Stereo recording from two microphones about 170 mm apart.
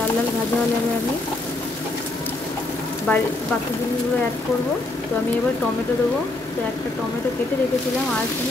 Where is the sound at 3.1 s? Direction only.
10° left (ahead or behind).